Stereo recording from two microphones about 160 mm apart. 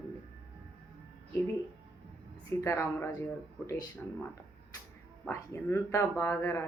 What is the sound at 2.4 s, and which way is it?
Speech, 15° left (ahead or behind).